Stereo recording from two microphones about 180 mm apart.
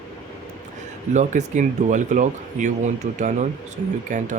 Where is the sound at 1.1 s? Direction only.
40° right (ahead or behind).